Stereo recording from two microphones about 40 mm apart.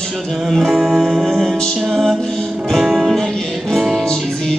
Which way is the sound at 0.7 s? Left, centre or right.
Centre.